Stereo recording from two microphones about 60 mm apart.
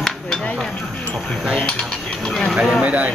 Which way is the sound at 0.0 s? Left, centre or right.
Centre.